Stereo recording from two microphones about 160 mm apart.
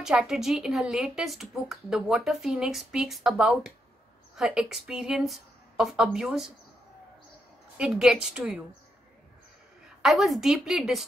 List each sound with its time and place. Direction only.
0.0 s speech: 5° right (ahead or behind)
7.7 s speech: 5° right (ahead or behind)
10.0 s speech: centre (ahead or behind)